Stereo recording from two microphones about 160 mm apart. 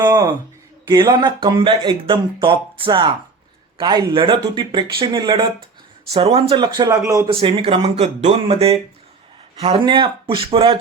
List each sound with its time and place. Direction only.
0.0 s speech: 25° right (ahead or behind)
7.3 s speech: 35° right (ahead or behind)